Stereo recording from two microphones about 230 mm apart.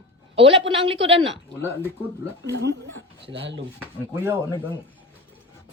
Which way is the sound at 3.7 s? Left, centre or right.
Centre.